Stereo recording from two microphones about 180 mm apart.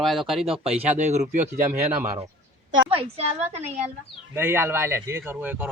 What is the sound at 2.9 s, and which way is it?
Speech, 30° right (ahead or behind).